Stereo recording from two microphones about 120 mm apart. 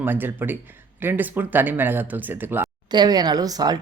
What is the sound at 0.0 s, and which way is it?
Speech, 15° right (ahead or behind).